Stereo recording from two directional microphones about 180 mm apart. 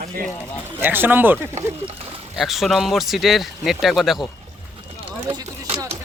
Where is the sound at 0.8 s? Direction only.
10° right (ahead or behind).